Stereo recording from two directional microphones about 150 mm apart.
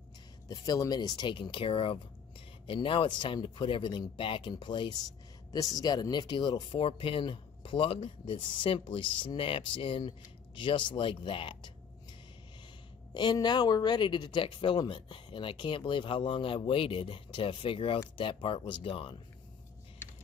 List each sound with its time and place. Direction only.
0.5 s speech: 25° left (ahead or behind)